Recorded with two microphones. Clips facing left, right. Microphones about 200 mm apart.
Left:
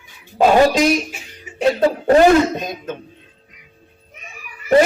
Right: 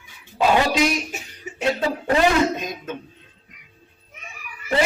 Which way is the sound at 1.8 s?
45° left (ahead or behind).